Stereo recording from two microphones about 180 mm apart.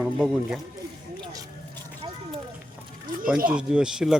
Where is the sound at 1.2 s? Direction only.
20° right (ahead or behind).